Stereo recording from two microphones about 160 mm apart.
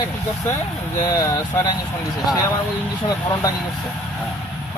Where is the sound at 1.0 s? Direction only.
20° left (ahead or behind).